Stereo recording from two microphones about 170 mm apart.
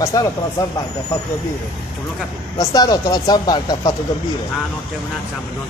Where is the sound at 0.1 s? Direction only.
20° left (ahead or behind).